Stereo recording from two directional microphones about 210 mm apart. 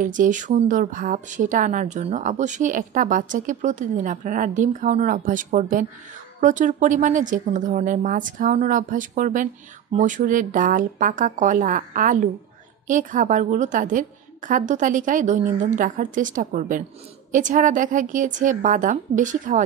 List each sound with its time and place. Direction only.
0.0 s a woman's voice: 40° right (ahead or behind)